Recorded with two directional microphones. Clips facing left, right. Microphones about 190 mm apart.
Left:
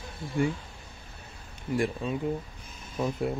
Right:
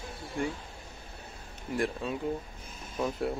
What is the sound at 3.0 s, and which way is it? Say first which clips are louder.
Speech: left 2 dB; centre (ahead or behind).